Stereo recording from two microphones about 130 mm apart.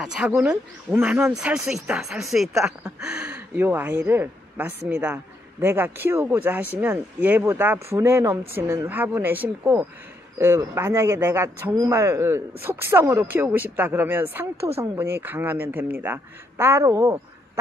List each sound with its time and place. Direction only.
0.0 s speech: 5° right (ahead or behind)
1.3 s a man's voice: 5° right (ahead or behind); by 17.2 s 25° right (ahead or behind)